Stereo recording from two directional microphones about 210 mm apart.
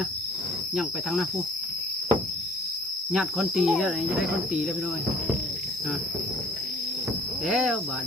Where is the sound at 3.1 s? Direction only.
Centre (ahead or behind).